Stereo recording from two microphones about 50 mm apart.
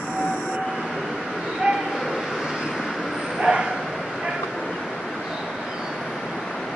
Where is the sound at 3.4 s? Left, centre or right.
Centre.